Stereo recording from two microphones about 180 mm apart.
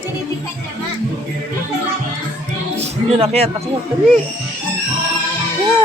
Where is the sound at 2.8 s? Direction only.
35° right (ahead or behind).